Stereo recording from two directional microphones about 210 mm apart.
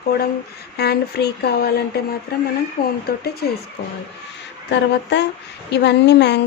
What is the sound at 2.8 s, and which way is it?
Speech, 25° left (ahead or behind).